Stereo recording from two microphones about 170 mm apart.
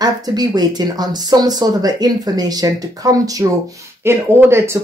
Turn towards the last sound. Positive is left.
turn(degrees=-15)  # may be behind; listen again after turning